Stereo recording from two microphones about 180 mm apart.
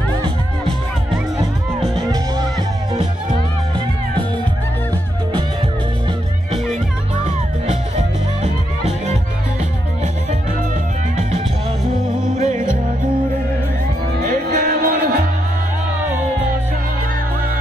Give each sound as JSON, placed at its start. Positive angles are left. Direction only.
{"t": 14.5, "sound": "music", "side_deg": -50}